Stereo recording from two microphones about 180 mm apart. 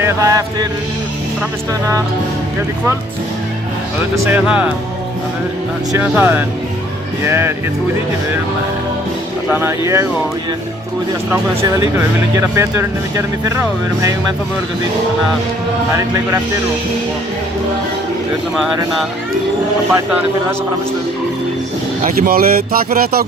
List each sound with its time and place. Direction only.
0.0 s music: 20° right (ahead or behind)
4.1 s speech: 10° right (ahead or behind)
5.9 s speech: 10° right (ahead or behind)
9.5 s speech: 15° right (ahead or behind)
11.3 s speech: 15° right (ahead or behind)
22.0 s speech: 50° right (ahead or behind)